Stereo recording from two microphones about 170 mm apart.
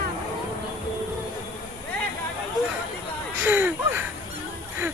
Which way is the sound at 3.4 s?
10° right (ahead or behind).